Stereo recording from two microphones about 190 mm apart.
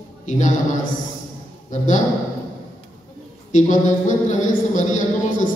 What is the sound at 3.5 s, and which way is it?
A man's voice, 40° left (ahead or behind).